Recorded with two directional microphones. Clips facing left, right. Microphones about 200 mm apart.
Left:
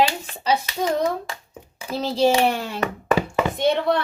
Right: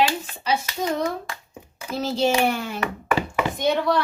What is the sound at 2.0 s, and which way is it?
Speech, 35° left (ahead or behind).